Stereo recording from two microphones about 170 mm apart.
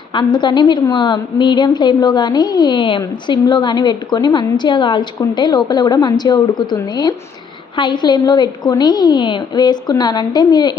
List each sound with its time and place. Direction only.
0.1 s a woman's voice: 25° left (ahead or behind)